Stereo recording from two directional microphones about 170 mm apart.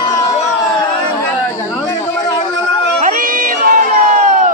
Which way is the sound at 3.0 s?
55° right (ahead or behind).